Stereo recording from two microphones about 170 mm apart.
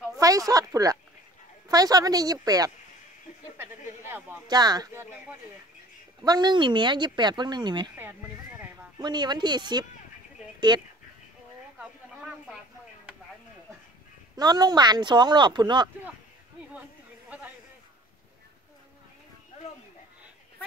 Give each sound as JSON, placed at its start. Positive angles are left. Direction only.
{"t": 0.2, "sound": "speech", "side_deg": -20}
{"t": 4.0, "sound": "a man's voice", "side_deg": -10}
{"t": 4.5, "sound": "speech", "side_deg": -25}
{"t": 6.2, "sound": "speech", "side_deg": -25}
{"t": 8.0, "sound": "speech", "side_deg": -10}
{"t": 8.9, "sound": "speech", "side_deg": -25}
{"t": 11.8, "sound": "a sound", "side_deg": -5}
{"t": 14.3, "sound": "speech", "side_deg": -25}